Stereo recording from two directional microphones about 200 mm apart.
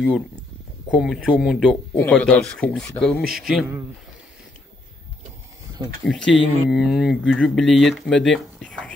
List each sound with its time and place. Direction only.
0.8 s speech: centre (ahead or behind)
6.0 s speech: centre (ahead or behind)